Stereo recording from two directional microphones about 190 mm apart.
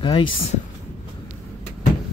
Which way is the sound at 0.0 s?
25° left (ahead or behind).